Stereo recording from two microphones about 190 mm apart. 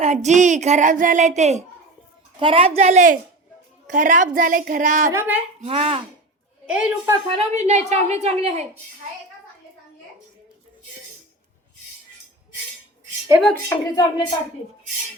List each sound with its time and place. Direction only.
0.0 s speech: 35° right (ahead or behind)
3.8 s child singing: 40° right (ahead or behind)
5.1 s speech: 10° right (ahead or behind)
5.5 s speech: 35° right (ahead or behind)
6.7 s a woman's voice: 5° right (ahead or behind)
7.3 s speech: 35° right (ahead or behind)
13.5 s speech: 15° left (ahead or behind)